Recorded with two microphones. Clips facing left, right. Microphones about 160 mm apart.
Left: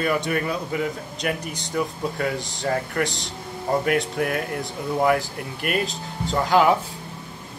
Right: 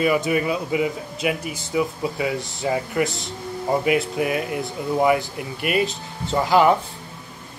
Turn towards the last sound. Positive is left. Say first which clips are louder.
# right 2 dB
turn(degrees=0)  # may be behind; listen again after turning